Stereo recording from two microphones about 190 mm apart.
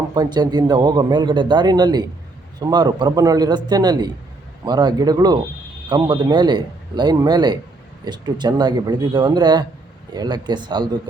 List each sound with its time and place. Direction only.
0.1 s a man's voice: 20° right (ahead or behind)